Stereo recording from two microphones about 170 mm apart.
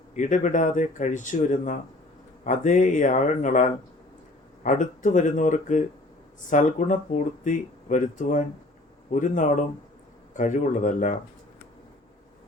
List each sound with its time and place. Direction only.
0.2 s speech: 45° left (ahead or behind)